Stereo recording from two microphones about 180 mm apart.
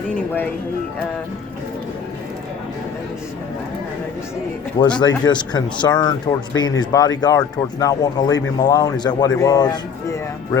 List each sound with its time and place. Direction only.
4.8 s speech: 25° left (ahead or behind)